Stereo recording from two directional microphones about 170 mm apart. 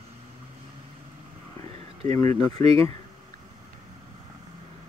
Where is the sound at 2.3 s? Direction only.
40° right (ahead or behind).